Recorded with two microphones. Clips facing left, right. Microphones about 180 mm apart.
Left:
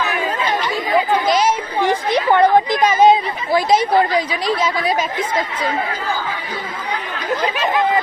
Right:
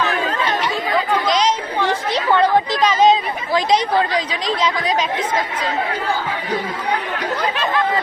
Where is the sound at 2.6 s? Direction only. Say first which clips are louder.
Left 2 dB; 15° left (ahead or behind).